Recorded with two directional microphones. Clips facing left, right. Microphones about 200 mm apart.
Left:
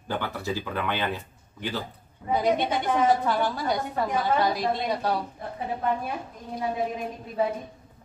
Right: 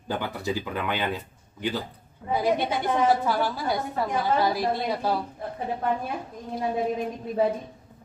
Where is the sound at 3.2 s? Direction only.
5° right (ahead or behind).